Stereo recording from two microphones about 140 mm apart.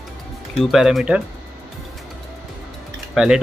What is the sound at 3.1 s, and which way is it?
Speech, 5° right (ahead or behind).